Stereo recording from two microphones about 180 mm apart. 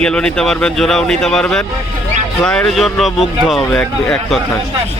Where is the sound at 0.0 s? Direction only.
5° left (ahead or behind).